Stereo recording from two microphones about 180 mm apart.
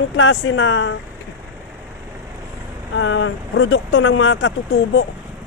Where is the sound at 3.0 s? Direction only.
90° left.